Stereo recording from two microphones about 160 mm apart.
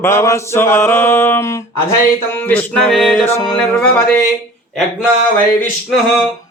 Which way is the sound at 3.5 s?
5° left (ahead or behind).